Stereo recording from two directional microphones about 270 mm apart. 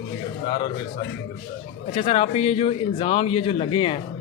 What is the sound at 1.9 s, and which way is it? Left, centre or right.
Speech, left.